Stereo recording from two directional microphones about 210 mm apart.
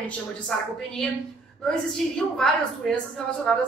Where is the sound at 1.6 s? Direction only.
5° left (ahead or behind).